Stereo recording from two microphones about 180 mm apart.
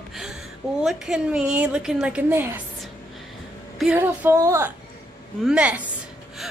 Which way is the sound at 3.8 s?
5° right (ahead or behind).